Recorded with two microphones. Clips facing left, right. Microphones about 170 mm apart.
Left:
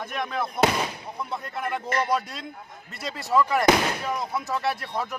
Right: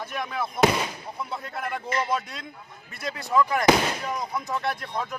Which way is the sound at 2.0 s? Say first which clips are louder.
Left 2 dB; centre (ahead or behind).